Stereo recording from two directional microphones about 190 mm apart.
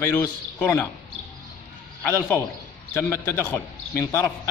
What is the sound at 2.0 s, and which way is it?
A man's voice, 10° left (ahead or behind).